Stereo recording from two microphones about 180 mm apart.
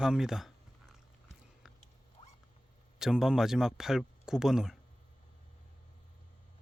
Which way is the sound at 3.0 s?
Centre (ahead or behind).